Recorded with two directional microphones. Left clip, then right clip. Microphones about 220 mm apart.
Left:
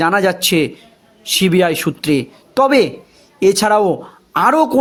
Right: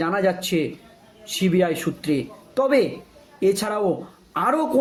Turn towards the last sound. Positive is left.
turn(degrees=45)  # may be behind; listen again after turning